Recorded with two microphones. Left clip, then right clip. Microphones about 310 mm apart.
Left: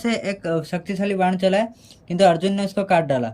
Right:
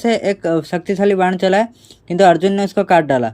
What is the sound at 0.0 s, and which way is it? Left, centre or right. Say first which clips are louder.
Speech: right 8 dB; centre.